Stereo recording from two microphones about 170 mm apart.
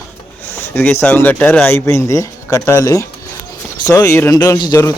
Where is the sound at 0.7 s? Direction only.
15° left (ahead or behind).